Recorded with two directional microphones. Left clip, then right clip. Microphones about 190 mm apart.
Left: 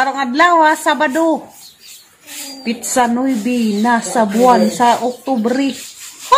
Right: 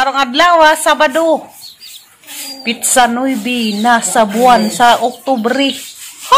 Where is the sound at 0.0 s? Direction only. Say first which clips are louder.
Right 2 dB; 5° right (ahead or behind).